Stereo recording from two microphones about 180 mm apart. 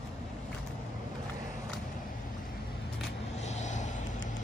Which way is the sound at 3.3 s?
40° left (ahead or behind).